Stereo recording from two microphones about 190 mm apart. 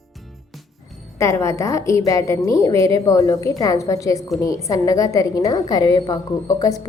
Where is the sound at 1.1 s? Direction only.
15° left (ahead or behind).